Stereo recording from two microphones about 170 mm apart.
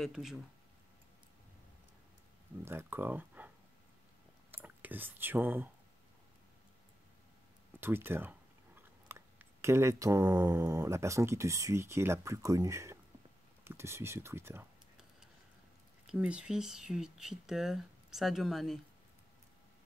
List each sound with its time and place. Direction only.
0.0 s speech: centre (ahead or behind)
2.6 s speech: 15° right (ahead or behind)
7.8 s speech: 15° right (ahead or behind)
16.1 s speech: 5° right (ahead or behind)